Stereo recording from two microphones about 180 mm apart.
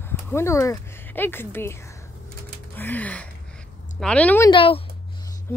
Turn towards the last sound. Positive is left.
turn(degrees=30)  # may be behind; listen again after turning